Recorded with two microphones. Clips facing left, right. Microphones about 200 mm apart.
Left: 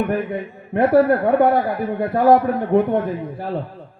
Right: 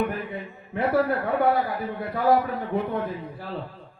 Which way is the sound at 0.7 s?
55° left (ahead or behind).